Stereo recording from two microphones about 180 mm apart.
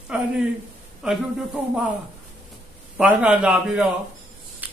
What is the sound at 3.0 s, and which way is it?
Speech, 5° right (ahead or behind).